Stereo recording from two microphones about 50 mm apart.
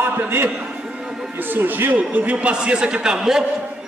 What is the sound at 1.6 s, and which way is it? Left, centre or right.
A man's voice, right.